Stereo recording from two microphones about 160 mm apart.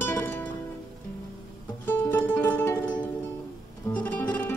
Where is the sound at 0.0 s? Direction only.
15° left (ahead or behind).